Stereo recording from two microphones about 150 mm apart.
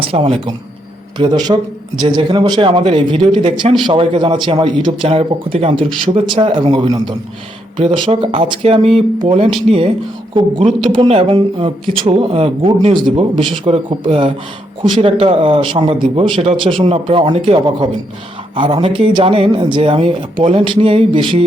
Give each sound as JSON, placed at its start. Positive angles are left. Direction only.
{"t": 0.0, "sound": "speech", "side_deg": -35}